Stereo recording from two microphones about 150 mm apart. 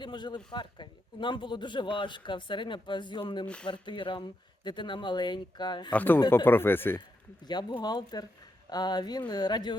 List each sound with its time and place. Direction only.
0.0 s a man's voice: 30° left (ahead or behind)
3.4 s speech: 5° left (ahead or behind)
3.7 s a man's voice: 30° left (ahead or behind)
5.9 s speech: 10° left (ahead or behind)
7.4 s speech: 30° left (ahead or behind)